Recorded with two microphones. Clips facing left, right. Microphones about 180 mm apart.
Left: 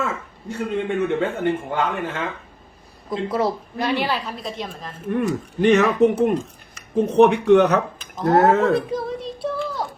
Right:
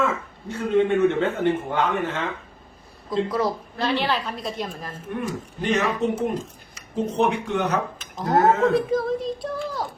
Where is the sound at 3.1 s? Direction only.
25° left (ahead or behind).